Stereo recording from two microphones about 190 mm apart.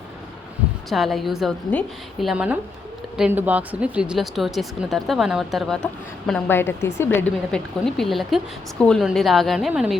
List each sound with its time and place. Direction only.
0.9 s speech: centre (ahead or behind)